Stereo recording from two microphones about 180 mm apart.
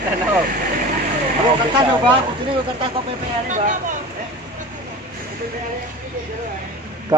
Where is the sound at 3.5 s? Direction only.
45° right (ahead or behind).